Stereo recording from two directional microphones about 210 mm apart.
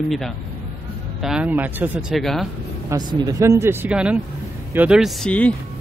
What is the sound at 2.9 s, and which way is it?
Speech, 15° right (ahead or behind).